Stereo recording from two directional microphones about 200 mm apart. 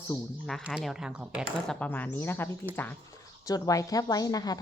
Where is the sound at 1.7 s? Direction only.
10° left (ahead or behind).